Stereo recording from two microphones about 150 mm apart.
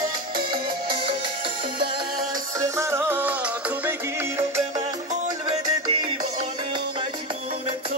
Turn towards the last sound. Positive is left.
turn(degrees=-25)  # may be behind; listen again after turning